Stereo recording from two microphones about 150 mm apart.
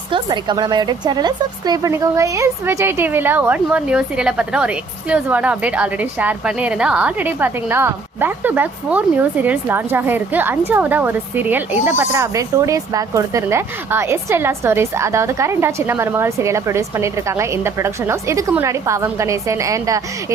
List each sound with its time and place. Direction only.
0.1 s speech: 30° right (ahead or behind)